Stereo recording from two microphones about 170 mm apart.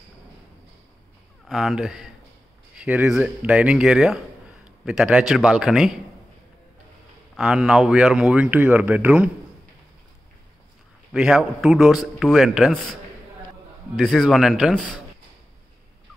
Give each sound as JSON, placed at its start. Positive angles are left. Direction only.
{"t": 1.5, "sound": "a man's voice", "side_deg": 0}
{"t": 7.3, "sound": "speech", "side_deg": -5}
{"t": 11.1, "sound": "a man's voice", "side_deg": -5}
{"t": 13.9, "sound": "a man's voice", "side_deg": 0}